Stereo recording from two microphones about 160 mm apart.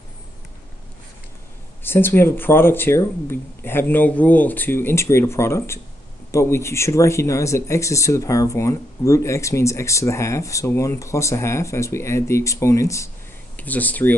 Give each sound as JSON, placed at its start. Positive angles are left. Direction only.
{"t": 1.8, "sound": "speech", "side_deg": 15}